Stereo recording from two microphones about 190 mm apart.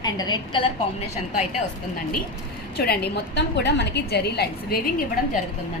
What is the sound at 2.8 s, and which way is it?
A woman's voice, 60° left (ahead or behind).